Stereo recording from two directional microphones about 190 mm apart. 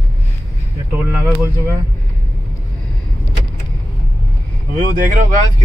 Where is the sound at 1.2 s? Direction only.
10° right (ahead or behind).